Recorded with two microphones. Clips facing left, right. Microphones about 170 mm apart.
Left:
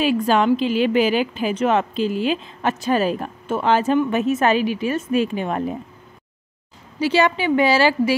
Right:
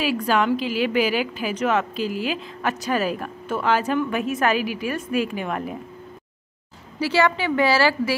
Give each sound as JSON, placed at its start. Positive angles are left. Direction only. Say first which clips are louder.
{"t": 0.0, "sound": "a woman's voice", "louder": "left 4 dB", "side_deg": 25}
{"t": 7.0, "sound": "a woman's voice", "louder": "left 2 dB", "side_deg": 20}